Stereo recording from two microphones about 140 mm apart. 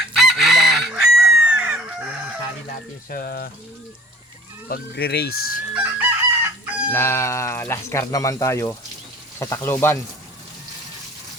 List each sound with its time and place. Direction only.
0.2 s chicken: centre (ahead or behind)
3.1 s speech: 90° left
4.7 s speech: 90° left
5.7 s chicken: 15° right (ahead or behind)
6.9 s speech: 20° left (ahead or behind)